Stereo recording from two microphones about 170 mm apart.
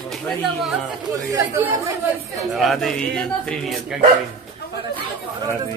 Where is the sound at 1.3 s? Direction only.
20° right (ahead or behind).